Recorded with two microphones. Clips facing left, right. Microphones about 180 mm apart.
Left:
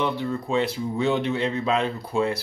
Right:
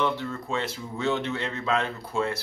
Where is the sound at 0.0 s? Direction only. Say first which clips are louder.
Left 2 dB; 15° left (ahead or behind).